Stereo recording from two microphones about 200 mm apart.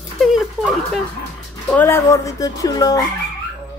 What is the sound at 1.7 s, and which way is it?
Speech, 10° left (ahead or behind).